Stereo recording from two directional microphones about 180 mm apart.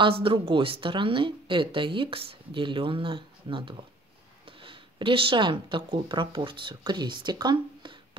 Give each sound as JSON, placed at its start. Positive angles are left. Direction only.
{"t": 0.0, "sound": "a woman's voice", "side_deg": -30}